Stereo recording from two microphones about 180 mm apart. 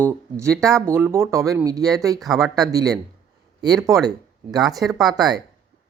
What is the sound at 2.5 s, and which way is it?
A man's voice, 20° right (ahead or behind).